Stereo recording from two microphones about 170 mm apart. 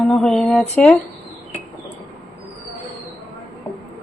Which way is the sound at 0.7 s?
5° left (ahead or behind).